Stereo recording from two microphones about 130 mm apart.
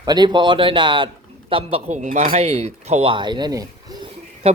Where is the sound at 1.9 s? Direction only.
65° right (ahead or behind); by 4.0 s 30° right (ahead or behind).